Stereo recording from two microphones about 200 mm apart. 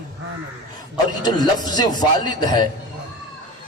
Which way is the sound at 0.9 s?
20° left (ahead or behind).